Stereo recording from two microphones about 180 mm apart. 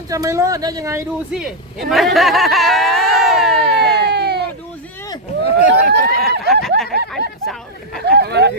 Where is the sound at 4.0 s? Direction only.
65° right (ahead or behind).